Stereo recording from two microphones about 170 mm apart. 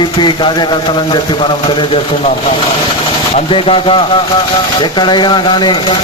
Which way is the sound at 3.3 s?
30° left (ahead or behind).